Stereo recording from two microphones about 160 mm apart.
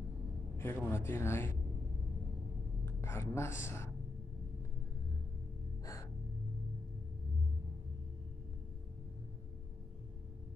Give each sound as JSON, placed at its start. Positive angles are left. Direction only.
{"t": 0.6, "sound": "speech", "side_deg": 15}
{"t": 2.8, "sound": "a woman's voice", "side_deg": 15}